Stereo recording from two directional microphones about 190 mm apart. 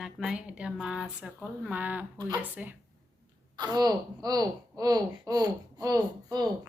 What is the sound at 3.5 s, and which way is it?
Speech, 20° right (ahead or behind).